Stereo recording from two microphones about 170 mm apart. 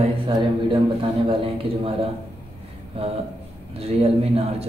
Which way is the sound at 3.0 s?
35° right (ahead or behind).